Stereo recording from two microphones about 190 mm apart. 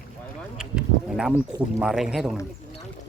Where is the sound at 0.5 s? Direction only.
5° right (ahead or behind).